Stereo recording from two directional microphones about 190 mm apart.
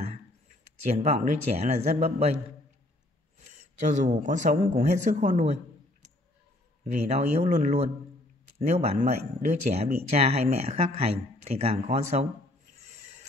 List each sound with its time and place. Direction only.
0.9 s speech: 40° right (ahead or behind)
3.3 s speech: 35° right (ahead or behind)
6.8 s speech: 35° right (ahead or behind)
12.7 s a sound: 35° right (ahead or behind)